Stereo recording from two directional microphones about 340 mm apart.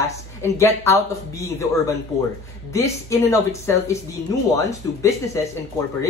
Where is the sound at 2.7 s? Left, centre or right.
Centre.